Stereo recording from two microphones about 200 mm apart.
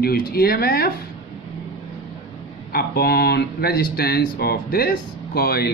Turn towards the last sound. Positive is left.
turn(degrees=50)  # may be behind; listen again after turning